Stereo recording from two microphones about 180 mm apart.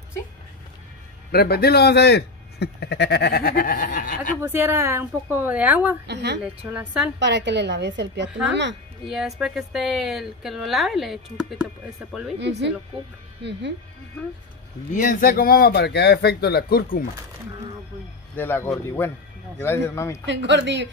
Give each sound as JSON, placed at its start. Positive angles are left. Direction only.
{"t": 1.3, "sound": "speech", "side_deg": 60}
{"t": 4.4, "sound": "a woman's voice", "side_deg": -15}
{"t": 6.0, "sound": "a woman's voice", "side_deg": -70}
{"t": 6.4, "sound": "a woman's voice", "side_deg": -5}
{"t": 7.2, "sound": "a woman's voice", "side_deg": -70}
{"t": 9.0, "sound": "speech", "side_deg": 0}
{"t": 12.4, "sound": "a woman's voice", "side_deg": -75}
{"t": 14.9, "sound": "speech", "side_deg": 45}
{"t": 18.3, "sound": "speech", "side_deg": 10}
{"t": 20.2, "sound": "a woman's voice", "side_deg": -80}